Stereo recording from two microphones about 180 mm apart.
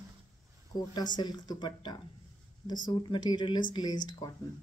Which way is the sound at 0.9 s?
25° left (ahead or behind).